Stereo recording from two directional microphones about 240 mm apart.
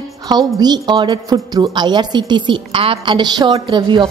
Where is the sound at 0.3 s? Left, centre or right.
Centre.